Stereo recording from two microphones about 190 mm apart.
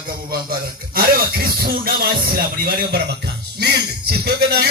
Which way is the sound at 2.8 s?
55° right (ahead or behind).